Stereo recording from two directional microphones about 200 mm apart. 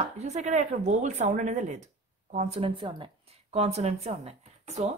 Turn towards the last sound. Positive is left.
turn(degrees=-35)  # may be behind; listen again after turning